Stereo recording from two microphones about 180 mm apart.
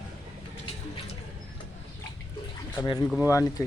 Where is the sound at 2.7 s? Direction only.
25° left (ahead or behind).